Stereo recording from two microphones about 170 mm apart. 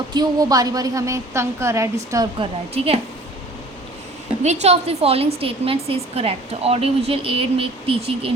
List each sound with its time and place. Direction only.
0.1 s a woman's voice: 25° right (ahead or behind)
2.4 s a woman's voice: 35° right (ahead or behind)
4.4 s a woman's voice: 40° right (ahead or behind)